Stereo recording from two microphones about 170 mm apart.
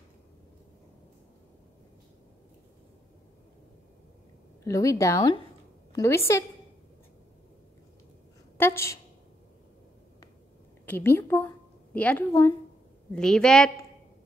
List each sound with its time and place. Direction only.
4.6 s a woman's voice: 20° left (ahead or behind)
8.5 s a woman's voice: 15° left (ahead or behind)
10.9 s a woman's voice: 10° left (ahead or behind)
13.1 s a woman's voice: 5° left (ahead or behind)